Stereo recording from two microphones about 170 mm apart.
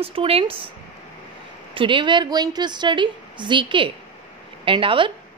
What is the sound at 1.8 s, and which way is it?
A woman's voice, 30° right (ahead or behind).